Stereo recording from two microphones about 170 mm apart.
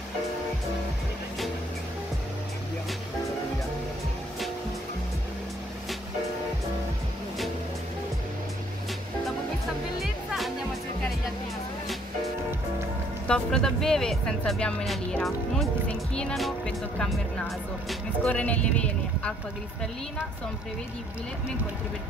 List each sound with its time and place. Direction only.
10.0 s music: centre (ahead or behind)
13.3 s speech: 5° left (ahead or behind)